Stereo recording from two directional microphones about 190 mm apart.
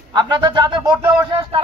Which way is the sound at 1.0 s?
20° right (ahead or behind).